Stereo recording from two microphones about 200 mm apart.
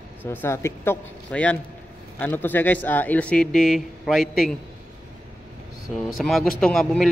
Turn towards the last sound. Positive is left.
turn(degrees=0)  # may be behind; listen again after turning